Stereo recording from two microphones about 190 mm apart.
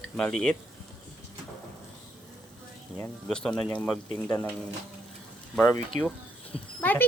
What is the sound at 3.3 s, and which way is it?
Speech, 5° left (ahead or behind).